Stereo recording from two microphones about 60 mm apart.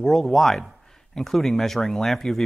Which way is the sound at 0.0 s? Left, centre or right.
Centre.